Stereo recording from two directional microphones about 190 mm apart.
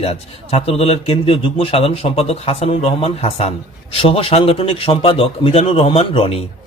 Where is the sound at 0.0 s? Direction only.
30° left (ahead or behind).